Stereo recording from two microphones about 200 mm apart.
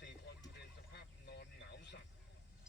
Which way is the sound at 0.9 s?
55° left (ahead or behind).